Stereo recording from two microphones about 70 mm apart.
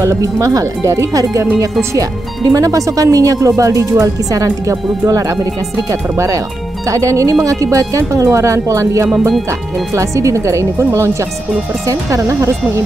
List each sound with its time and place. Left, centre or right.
0.0 s speech: right